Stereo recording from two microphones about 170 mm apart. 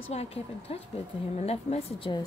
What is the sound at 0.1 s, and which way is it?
A woman's voice, 40° left (ahead or behind).